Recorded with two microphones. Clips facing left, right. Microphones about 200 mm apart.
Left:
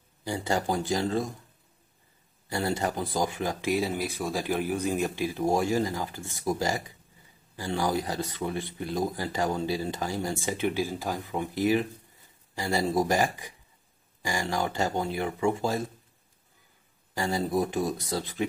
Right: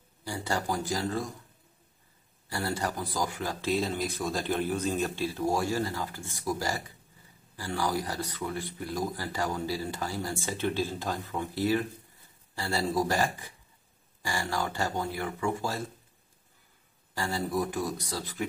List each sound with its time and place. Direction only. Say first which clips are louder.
0.2 s speech: left 4 dB; 20° left (ahead or behind)
2.5 s speech: left 3 dB; 20° left (ahead or behind)
17.1 s speech: left 3 dB; 20° left (ahead or behind)